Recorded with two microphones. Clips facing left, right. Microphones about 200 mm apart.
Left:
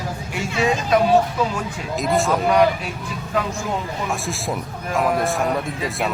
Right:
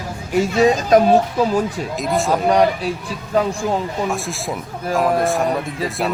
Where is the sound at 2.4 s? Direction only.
35° right (ahead or behind).